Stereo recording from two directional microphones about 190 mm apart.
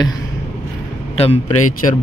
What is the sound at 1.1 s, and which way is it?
Mantra, 35° left (ahead or behind).